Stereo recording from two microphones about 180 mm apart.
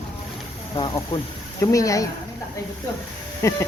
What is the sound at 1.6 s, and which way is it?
Speech, 20° left (ahead or behind).